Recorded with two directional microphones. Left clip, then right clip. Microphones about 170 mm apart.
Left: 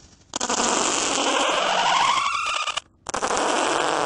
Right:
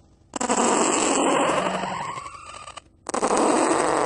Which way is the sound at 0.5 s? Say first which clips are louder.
Right 2 dB; 50° left (ahead or behind).